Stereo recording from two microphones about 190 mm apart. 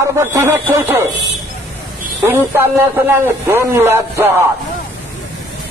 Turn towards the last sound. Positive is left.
turn(degrees=-10)  # may be behind; listen again after turning